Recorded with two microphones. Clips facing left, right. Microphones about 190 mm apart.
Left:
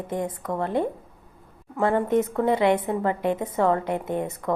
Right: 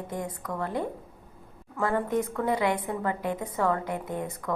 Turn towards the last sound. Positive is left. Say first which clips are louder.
# left 5 dB
turn(degrees=25)  # may be behind; listen again after turning